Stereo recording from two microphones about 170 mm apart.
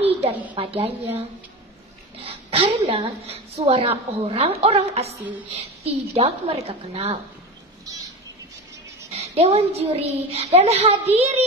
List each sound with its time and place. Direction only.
0.3 s a woman's voice: 10° right (ahead or behind)
0.6 s a woman's voice: 35° right (ahead or behind)
2.2 s a woman's voice: 35° right (ahead or behind)
7.8 s bird: 20° right (ahead or behind)
9.1 s a woman's voice: 35° right (ahead or behind)